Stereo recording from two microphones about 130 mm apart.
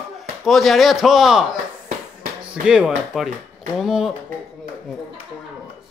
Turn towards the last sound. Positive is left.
turn(degrees=0)  # may be behind; listen again after turning